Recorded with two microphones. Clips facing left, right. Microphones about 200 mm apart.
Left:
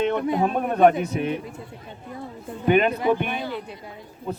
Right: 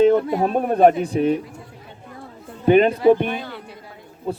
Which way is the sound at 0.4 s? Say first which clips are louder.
Right 2 dB; 35° right (ahead or behind).